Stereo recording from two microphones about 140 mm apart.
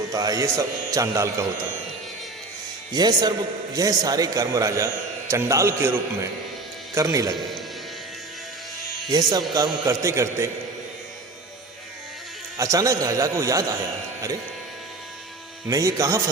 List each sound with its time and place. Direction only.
0.1 s speech: 25° right (ahead or behind)
2.9 s speech: 30° right (ahead or behind)
9.0 s speech: 30° right (ahead or behind)
12.5 s speech: 20° right (ahead or behind)
15.6 s speech: 20° right (ahead or behind)